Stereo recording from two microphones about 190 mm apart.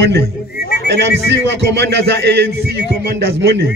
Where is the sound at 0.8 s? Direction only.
65° right (ahead or behind).